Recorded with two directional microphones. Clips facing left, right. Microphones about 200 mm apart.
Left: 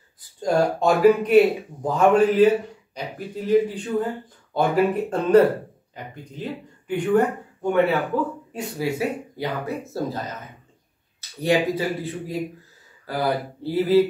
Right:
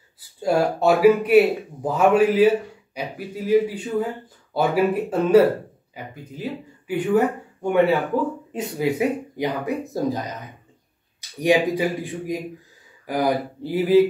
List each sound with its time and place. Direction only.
0.4 s speech: 10° right (ahead or behind)
8.5 s speech: 20° right (ahead or behind)